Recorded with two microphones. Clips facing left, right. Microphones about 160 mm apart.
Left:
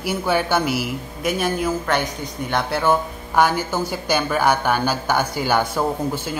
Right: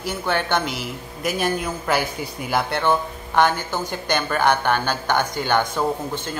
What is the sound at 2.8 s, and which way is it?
Speech, 10° left (ahead or behind).